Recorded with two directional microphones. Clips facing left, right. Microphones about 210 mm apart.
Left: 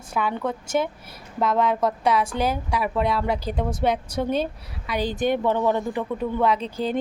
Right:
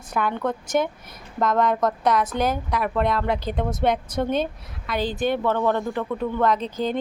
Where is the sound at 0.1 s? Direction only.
5° left (ahead or behind).